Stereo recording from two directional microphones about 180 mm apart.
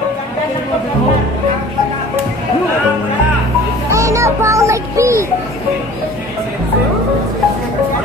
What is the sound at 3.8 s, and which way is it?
Music, 15° right (ahead or behind).